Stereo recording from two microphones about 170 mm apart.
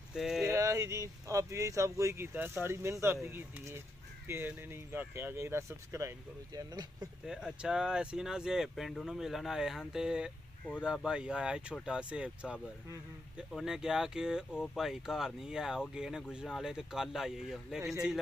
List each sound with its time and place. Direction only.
0.1 s speech: centre (ahead or behind)
0.5 s speech: 15° right (ahead or behind)
7.2 s speech: 5° right (ahead or behind)